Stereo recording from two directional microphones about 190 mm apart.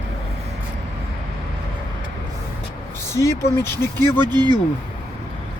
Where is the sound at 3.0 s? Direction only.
15° left (ahead or behind).